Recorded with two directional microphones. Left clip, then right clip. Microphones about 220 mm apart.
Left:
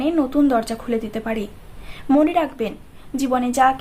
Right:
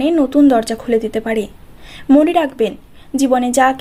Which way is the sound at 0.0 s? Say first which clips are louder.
Right 6 dB; 30° right (ahead or behind).